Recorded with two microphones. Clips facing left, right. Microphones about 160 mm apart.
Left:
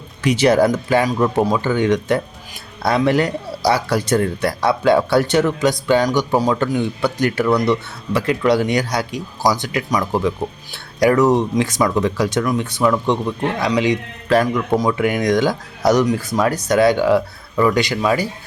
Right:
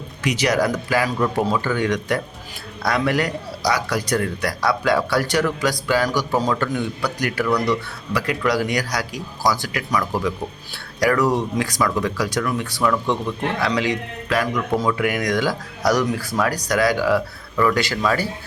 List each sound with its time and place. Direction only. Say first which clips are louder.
0.2 s speech: left 6 dB; 30° left (ahead or behind)
14.3 s a man's voice: left 6 dB; 30° left (ahead or behind)
14.8 s speech: left 3 dB; 20° left (ahead or behind)